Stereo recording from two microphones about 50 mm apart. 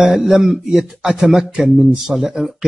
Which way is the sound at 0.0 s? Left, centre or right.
Centre.